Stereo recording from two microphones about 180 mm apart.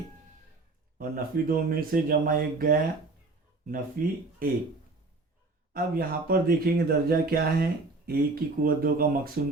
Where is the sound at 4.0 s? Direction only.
55° right (ahead or behind).